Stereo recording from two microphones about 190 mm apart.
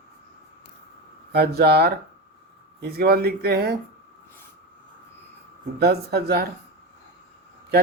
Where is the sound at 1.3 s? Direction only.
55° right (ahead or behind).